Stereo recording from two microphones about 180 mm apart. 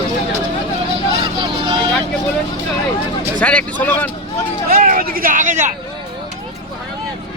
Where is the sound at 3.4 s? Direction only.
10° left (ahead or behind).